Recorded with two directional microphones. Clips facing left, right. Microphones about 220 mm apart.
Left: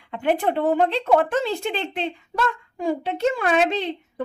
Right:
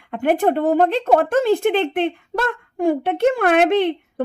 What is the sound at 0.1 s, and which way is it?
Speech, 45° right (ahead or behind).